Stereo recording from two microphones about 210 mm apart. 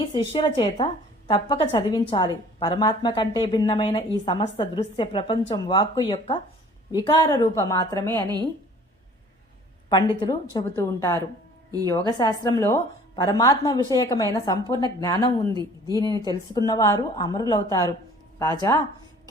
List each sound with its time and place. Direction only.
0.1 s a woman's voice: 20° left (ahead or behind)
9.9 s a woman's voice: 20° left (ahead or behind)